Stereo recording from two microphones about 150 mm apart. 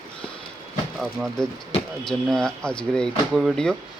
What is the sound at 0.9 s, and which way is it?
Speech, 5° left (ahead or behind).